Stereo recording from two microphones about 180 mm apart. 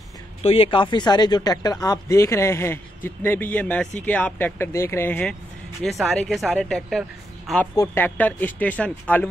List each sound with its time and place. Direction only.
0.4 s speech: 30° left (ahead or behind); by 5.3 s 10° left (ahead or behind)
5.8 s speech: centre (ahead or behind)
7.7 s speech: 15° left (ahead or behind)